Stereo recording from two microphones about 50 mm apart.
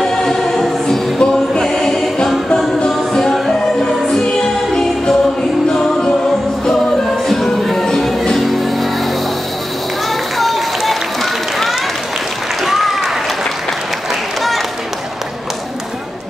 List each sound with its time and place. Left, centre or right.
0.0 s music: centre
1.6 s choir: centre
2.9 s music: centre
7.2 s music: centre
10.4 s run: centre
12.6 s a sound: centre